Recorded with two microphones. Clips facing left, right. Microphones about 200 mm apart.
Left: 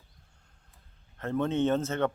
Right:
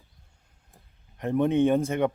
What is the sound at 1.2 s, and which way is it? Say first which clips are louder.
Speech: right 5 dB; 15° right (ahead or behind).